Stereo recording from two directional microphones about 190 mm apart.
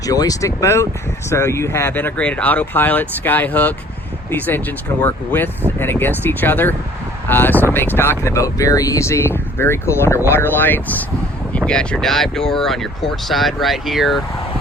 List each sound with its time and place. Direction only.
0.0 s speech: 20° left (ahead or behind); by 14.2 s centre (ahead or behind)